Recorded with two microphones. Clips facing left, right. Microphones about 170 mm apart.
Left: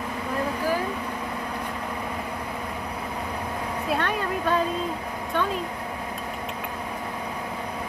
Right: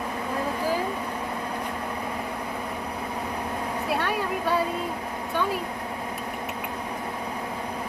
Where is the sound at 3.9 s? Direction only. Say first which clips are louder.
Left 1 dB; 5° right (ahead or behind).